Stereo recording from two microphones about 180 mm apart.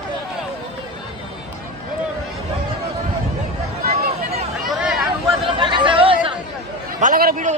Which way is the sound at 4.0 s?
55° right (ahead or behind).